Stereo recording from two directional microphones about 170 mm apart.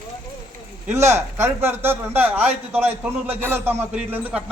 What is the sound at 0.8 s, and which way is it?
A man's voice, 15° right (ahead or behind).